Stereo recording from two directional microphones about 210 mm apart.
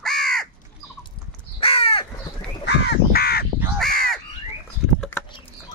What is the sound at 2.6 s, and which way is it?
Crow, 50° left (ahead or behind).